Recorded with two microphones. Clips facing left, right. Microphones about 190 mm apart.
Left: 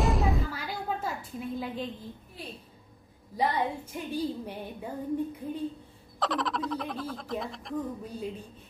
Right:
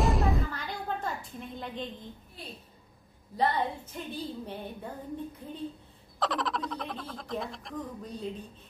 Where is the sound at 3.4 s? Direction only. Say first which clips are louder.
Even; 10° left (ahead or behind).